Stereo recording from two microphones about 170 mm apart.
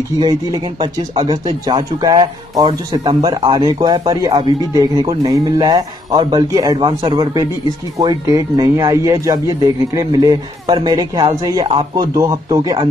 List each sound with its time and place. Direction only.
0.2 s speech: 25° right (ahead or behind)